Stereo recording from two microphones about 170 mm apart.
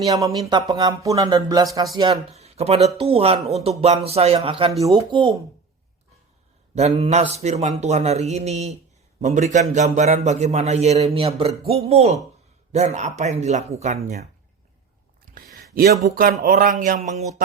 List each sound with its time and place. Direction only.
0.1 s speech: 20° right (ahead or behind)
2.3 s a man's voice: 40° right (ahead or behind)
6.7 s a man's voice: 40° right (ahead or behind)
15.5 s a sound: 60° right (ahead or behind)
16.0 s speech: 55° right (ahead or behind)
16.4 s a sound: 55° right (ahead or behind)